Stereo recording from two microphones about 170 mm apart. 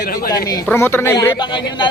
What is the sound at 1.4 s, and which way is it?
Speech, 30° left (ahead or behind).